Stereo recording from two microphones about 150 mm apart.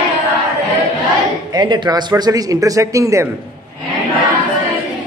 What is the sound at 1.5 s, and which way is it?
Speech, 30° right (ahead or behind).